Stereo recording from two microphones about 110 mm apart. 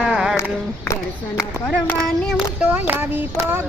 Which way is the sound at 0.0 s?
5° right (ahead or behind).